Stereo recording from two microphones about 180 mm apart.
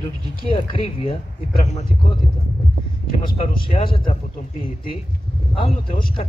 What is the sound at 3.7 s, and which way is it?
Speech, 30° left (ahead or behind).